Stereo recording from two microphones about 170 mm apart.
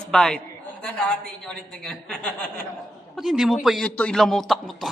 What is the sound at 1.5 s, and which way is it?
A man's voice, 5° left (ahead or behind).